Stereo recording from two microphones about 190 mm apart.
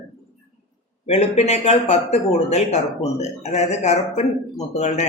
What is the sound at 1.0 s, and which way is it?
A man's voice, 30° left (ahead or behind).